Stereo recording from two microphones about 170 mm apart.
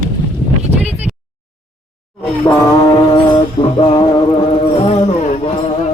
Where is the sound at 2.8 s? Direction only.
25° left (ahead or behind).